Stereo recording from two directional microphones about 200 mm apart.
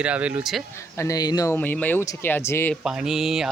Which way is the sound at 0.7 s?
15° left (ahead or behind).